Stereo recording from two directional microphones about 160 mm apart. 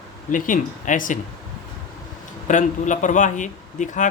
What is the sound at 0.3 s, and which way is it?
Speech, 55° left (ahead or behind).